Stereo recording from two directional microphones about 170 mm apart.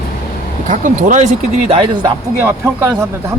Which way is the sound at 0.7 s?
50° right (ahead or behind).